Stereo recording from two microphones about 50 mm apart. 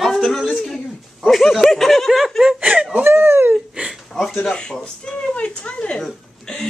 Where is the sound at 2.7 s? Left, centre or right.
Right.